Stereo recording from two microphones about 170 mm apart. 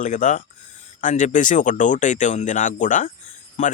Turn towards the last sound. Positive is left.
turn(degrees=45)  # may be behind; listen again after turning